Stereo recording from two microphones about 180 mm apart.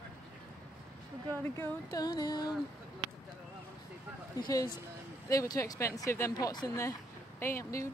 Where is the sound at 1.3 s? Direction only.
10° left (ahead or behind).